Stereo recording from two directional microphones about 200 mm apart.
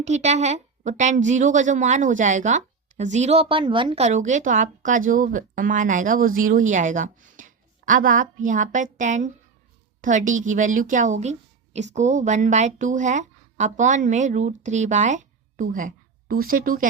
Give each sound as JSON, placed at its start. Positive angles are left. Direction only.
{"t": 0.0, "sound": "a woman's voice", "side_deg": -35}